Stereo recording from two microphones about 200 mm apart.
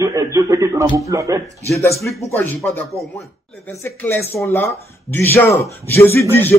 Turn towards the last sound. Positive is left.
turn(degrees=10)  # may be behind; listen again after turning